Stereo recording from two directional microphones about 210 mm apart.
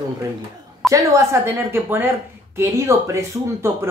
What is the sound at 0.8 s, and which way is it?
A woman's voice, 15° right (ahead or behind).